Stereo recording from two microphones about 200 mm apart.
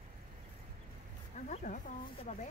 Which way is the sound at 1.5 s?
35° left (ahead or behind).